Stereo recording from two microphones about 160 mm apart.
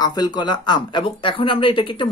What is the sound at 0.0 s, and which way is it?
Speech, 25° left (ahead or behind).